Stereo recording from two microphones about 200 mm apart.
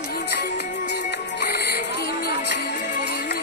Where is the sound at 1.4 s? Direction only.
55° left (ahead or behind).